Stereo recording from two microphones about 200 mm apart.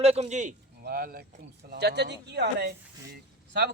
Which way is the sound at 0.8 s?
50° right (ahead or behind).